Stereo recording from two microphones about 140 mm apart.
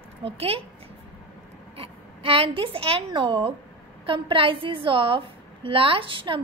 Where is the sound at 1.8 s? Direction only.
40° right (ahead or behind).